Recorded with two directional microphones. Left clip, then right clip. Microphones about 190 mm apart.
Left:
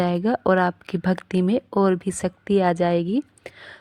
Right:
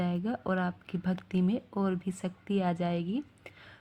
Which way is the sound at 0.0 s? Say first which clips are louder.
Left 13 dB; 50° left (ahead or behind).